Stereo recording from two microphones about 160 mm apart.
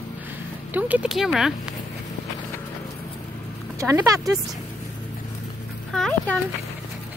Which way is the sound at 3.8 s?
20° right (ahead or behind).